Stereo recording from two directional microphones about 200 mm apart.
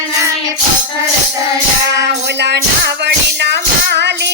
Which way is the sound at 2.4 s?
55° right (ahead or behind).